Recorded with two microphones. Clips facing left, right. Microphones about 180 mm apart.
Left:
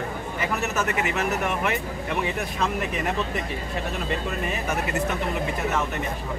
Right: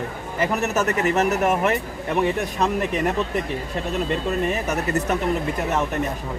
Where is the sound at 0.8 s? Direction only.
40° right (ahead or behind).